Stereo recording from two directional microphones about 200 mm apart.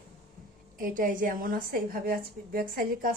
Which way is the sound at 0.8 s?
45° right (ahead or behind).